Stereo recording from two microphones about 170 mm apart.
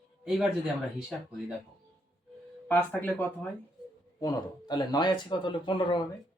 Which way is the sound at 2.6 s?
10° left (ahead or behind).